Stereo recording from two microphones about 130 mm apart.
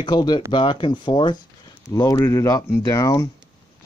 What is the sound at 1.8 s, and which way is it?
Speech, 25° left (ahead or behind).